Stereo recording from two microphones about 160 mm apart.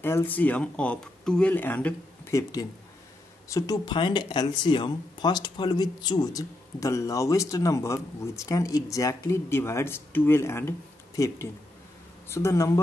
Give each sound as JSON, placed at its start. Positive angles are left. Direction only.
{"t": 0.0, "sound": "speech", "side_deg": 15}